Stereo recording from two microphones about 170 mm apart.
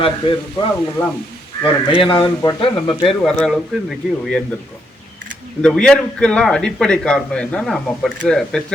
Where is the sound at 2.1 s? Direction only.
15° left (ahead or behind).